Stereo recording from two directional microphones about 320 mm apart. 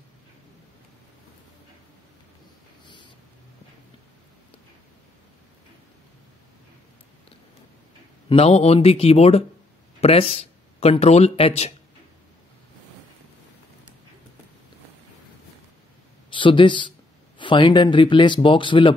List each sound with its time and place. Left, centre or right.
8.3 s speech: centre
16.3 s speech: centre